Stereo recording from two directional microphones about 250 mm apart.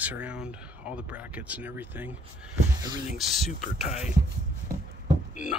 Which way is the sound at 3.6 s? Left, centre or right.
Left.